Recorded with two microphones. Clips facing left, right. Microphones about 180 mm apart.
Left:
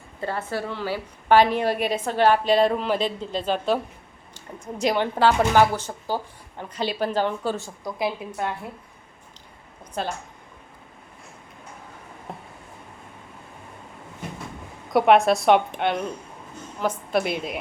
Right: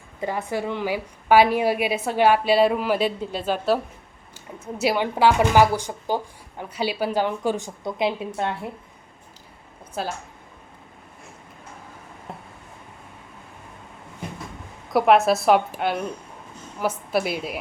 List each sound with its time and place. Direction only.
0.2 s a woman's voice: 15° right (ahead or behind)
10.0 s a woman's voice: 5° right (ahead or behind)
12.3 s a sound: 5° right (ahead or behind)
14.9 s a woman's voice: centre (ahead or behind)